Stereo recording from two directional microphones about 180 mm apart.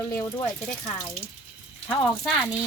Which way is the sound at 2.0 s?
Centre (ahead or behind).